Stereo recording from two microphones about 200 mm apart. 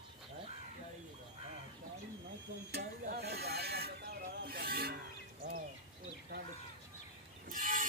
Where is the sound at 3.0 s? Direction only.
55° right (ahead or behind).